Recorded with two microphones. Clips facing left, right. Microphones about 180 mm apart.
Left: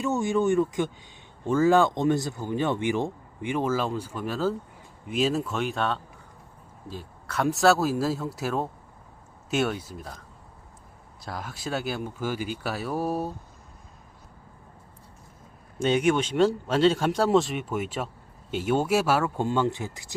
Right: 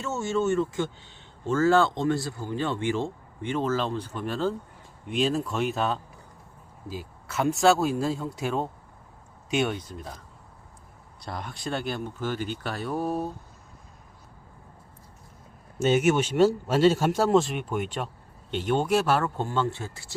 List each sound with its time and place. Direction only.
0.0 s speech: 15° left (ahead or behind); by 6.0 s 5° right (ahead or behind)
7.3 s speech: centre (ahead or behind)
11.2 s speech: centre (ahead or behind)
15.8 s speech: 5° right (ahead or behind)
19.5 s speech: 20° left (ahead or behind)